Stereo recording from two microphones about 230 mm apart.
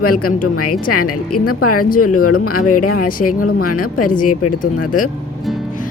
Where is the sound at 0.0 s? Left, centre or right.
Left.